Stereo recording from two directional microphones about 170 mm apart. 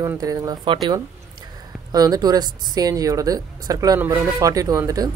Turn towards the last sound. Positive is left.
turn(degrees=-20)  # may be behind; listen again after turning